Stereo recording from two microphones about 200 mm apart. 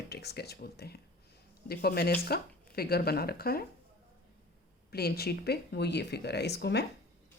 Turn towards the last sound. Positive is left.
turn(degrees=55)  # may be behind; listen again after turning